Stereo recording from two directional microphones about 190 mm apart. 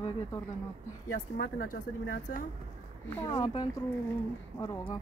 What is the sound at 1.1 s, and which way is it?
Speech, 45° left (ahead or behind).